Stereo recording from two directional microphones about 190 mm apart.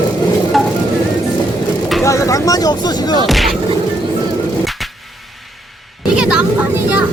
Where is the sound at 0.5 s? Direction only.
Centre (ahead or behind).